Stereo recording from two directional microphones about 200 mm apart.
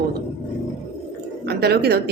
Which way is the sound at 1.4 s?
50° right (ahead or behind).